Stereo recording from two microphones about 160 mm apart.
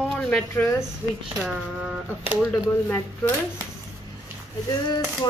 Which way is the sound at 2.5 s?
15° left (ahead or behind).